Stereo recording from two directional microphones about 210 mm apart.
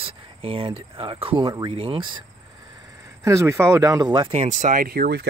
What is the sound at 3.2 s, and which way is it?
Speech, 15° right (ahead or behind).